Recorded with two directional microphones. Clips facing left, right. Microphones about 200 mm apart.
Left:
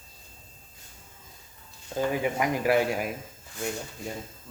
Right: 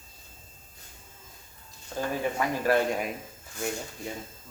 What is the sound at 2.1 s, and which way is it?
Speech, 15° left (ahead or behind).